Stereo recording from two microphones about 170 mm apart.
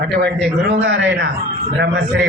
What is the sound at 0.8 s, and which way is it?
A man's voice, 90° right.